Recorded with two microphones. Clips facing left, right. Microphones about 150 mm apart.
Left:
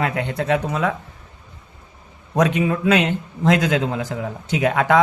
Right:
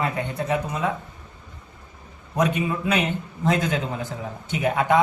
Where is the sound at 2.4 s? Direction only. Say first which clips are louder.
Left 4 dB; 90° left.